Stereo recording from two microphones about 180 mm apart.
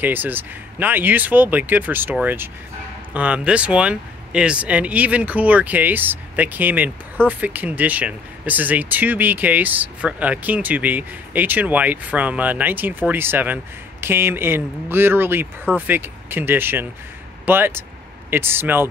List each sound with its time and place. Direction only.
0.0 s speech: 10° right (ahead or behind)